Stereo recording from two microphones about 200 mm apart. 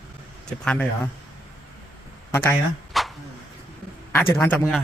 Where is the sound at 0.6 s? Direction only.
5° left (ahead or behind).